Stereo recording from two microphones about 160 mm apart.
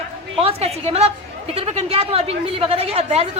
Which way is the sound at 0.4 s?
40° right (ahead or behind).